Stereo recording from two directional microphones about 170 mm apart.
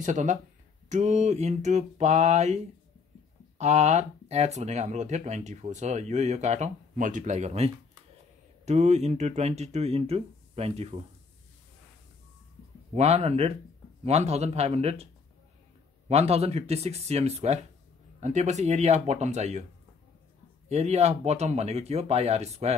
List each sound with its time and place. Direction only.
0.0 s speech: 45° right (ahead or behind)
12.9 s speech: 40° right (ahead or behind)
16.1 s speech: 35° right (ahead or behind)
20.6 s speech: 40° right (ahead or behind)